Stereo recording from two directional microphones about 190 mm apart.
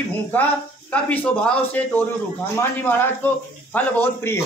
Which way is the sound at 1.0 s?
10° left (ahead or behind).